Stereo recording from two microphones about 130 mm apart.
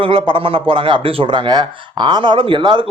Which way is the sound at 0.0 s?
40° right (ahead or behind).